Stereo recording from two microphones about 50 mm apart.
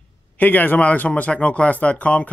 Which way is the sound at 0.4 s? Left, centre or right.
Left.